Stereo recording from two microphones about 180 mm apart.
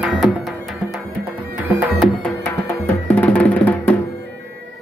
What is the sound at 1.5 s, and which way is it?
Music, 5° right (ahead or behind).